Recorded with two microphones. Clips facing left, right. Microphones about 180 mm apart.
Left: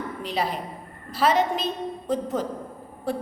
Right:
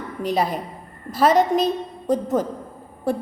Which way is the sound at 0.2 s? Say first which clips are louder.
Right 7 dB; 45° right (ahead or behind).